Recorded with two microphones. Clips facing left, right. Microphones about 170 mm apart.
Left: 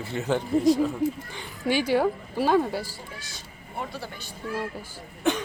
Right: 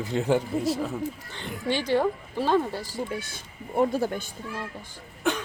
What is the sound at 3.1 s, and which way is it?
Speech, 55° right (ahead or behind).